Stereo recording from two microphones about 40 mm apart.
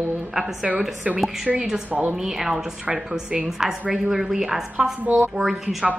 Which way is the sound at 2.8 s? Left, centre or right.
Right.